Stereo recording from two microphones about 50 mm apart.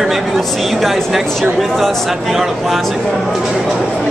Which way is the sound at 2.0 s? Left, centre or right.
Centre.